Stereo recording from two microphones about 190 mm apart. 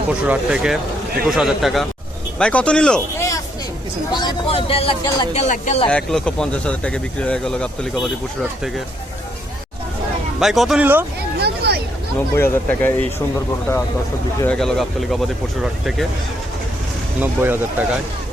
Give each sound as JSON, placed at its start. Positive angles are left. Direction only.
{"t": 0.1, "sound": "speech", "side_deg": -5}
{"t": 4.1, "sound": "speech", "side_deg": 25}
{"t": 5.9, "sound": "speech", "side_deg": 0}
{"t": 10.4, "sound": "speech", "side_deg": 0}
{"t": 11.3, "sound": "a sound", "side_deg": -60}
{"t": 12.3, "sound": "speech", "side_deg": 10}
{"t": 14.4, "sound": "speech", "side_deg": 5}
{"t": 17.2, "sound": "speech", "side_deg": -10}